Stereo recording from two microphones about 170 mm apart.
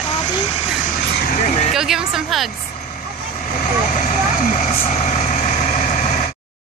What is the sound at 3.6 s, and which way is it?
Vehicle, 50° left (ahead or behind).